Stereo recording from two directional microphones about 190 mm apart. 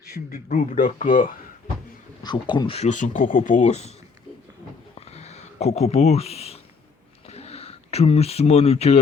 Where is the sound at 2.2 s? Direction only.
25° left (ahead or behind).